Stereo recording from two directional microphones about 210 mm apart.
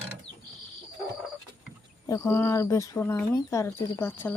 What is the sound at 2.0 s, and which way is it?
Speech, 15° left (ahead or behind).